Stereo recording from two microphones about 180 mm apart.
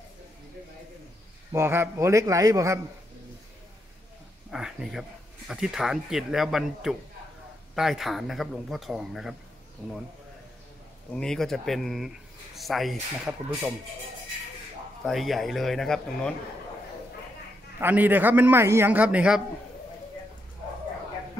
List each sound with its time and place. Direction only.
1.5 s a man's voice: 15° right (ahead or behind)
4.5 s speech: 5° right (ahead or behind)
11.1 s speech: 5° left (ahead or behind)
15.0 s speech: centre (ahead or behind)
17.7 s a man's voice: 10° right (ahead or behind)